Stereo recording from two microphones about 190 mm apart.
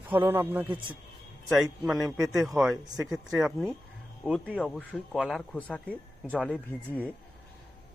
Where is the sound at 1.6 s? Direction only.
Centre (ahead or behind).